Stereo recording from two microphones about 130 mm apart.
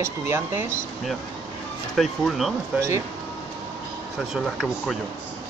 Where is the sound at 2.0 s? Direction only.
Centre (ahead or behind).